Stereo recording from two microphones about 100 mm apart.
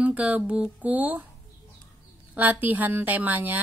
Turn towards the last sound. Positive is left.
turn(degrees=-15)  # may be behind; listen again after turning